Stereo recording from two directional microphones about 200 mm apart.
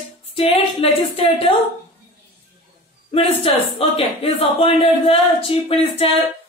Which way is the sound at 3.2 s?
30° left (ahead or behind).